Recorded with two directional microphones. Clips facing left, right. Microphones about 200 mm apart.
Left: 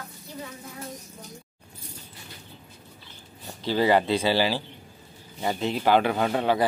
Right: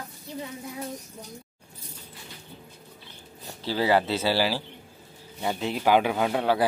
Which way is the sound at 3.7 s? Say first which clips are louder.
Left 2 dB; 5° right (ahead or behind).